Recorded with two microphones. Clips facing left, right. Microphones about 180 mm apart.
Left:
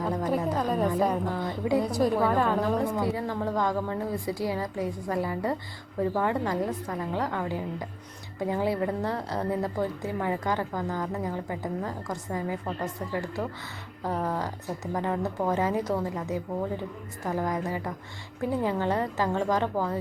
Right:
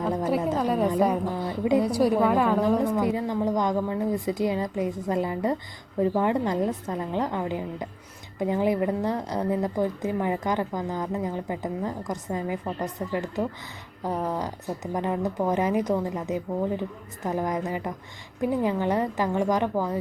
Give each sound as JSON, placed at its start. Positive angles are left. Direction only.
{"t": 0.3, "sound": "music", "side_deg": -10}
{"t": 0.9, "sound": "a woman's voice", "side_deg": -10}